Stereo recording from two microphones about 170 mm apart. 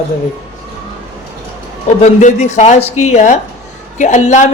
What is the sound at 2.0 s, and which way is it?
Speech, 45° left (ahead or behind).